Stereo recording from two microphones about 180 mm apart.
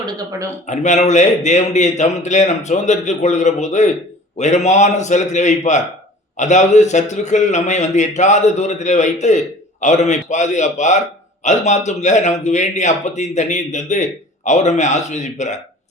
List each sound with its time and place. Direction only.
0.0 s speech: 20° right (ahead or behind)
0.7 s a man's voice: 40° left (ahead or behind)